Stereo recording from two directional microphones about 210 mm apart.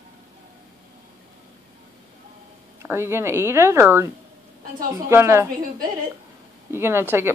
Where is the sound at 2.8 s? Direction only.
10° right (ahead or behind).